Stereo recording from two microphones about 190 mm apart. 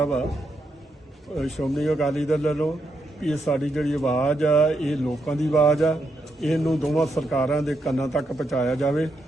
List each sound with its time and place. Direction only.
0.0 s a man's voice: 5° left (ahead or behind)
1.4 s a man's voice: centre (ahead or behind)